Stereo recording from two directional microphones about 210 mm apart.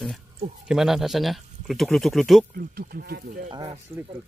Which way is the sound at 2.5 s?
45° right (ahead or behind).